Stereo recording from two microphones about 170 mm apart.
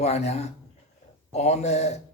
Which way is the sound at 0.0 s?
40° left (ahead or behind).